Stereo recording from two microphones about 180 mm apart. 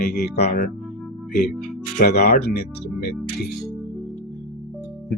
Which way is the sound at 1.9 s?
60° left (ahead or behind).